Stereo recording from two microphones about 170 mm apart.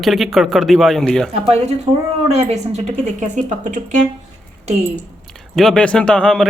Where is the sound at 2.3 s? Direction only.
40° right (ahead or behind).